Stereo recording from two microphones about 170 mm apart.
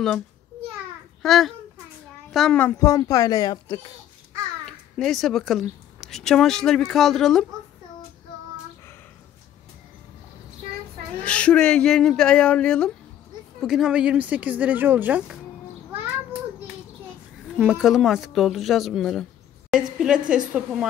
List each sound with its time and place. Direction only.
1.2 s a child's voice: centre (ahead or behind)
2.8 s speech: 20° left (ahead or behind)
4.6 s a woman's voice: 5° left (ahead or behind)
11.2 s speech: 5° left (ahead or behind); by 15.3 s 10° right (ahead or behind)
17.6 s speech: 5° right (ahead or behind)